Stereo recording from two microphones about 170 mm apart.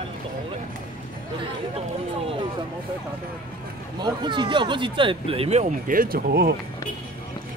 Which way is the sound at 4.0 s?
25° right (ahead or behind).